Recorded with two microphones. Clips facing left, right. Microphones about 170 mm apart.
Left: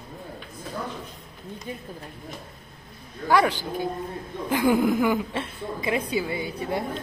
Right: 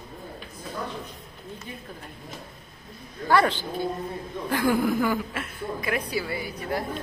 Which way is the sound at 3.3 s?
10° left (ahead or behind).